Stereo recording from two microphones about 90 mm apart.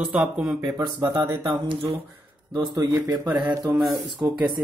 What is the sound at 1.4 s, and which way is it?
Speech, 75° right (ahead or behind).